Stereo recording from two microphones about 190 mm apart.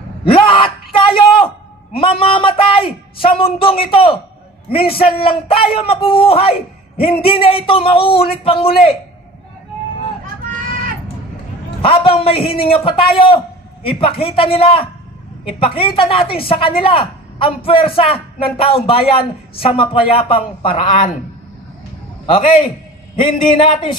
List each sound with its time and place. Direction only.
0.2 s a sound: 30° left (ahead or behind)
2.0 s a man's voice: 30° left (ahead or behind)
11.8 s a man's voice: 30° left (ahead or behind)
22.2 s a man's voice: 30° left (ahead or behind)